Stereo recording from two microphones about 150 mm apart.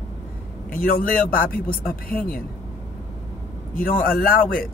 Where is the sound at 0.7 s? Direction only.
70° left (ahead or behind).